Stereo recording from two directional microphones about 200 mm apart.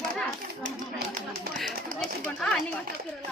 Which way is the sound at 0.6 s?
40° right (ahead or behind).